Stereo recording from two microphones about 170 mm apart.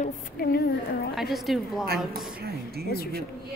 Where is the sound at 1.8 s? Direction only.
65° right (ahead or behind).